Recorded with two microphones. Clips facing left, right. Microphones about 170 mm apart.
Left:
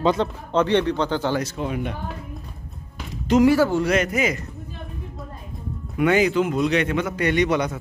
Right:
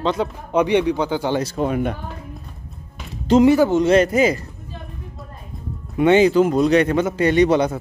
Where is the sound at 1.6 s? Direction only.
50° right (ahead or behind).